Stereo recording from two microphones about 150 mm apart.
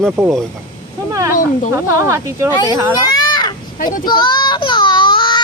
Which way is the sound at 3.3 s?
30° left (ahead or behind).